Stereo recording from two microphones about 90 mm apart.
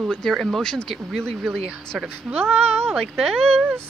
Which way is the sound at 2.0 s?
25° right (ahead or behind).